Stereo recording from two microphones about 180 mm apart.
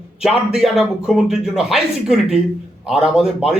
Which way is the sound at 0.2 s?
5° right (ahead or behind).